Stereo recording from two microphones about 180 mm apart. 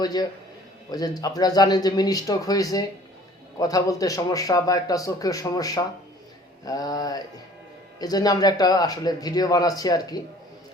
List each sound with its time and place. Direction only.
0.0 s a man's voice: 20° left (ahead or behind)